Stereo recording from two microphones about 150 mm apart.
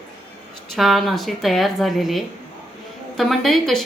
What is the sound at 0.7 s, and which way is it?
Speech, centre (ahead or behind).